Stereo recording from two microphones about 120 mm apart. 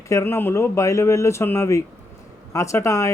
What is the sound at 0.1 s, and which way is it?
Speech, 20° left (ahead or behind).